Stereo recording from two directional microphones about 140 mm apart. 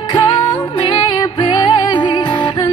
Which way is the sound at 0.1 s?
35° left (ahead or behind).